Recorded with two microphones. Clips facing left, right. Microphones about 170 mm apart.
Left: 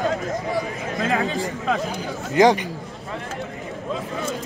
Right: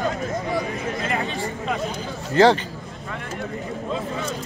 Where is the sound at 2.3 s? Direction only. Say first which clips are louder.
Even; 15° left (ahead or behind).